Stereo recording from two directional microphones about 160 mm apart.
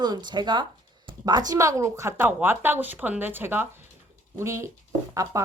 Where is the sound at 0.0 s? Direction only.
25° right (ahead or behind).